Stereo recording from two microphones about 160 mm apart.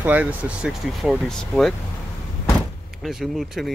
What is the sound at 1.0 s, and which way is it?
Speech, centre (ahead or behind).